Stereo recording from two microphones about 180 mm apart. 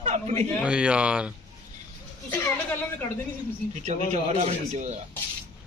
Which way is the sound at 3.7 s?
40° right (ahead or behind).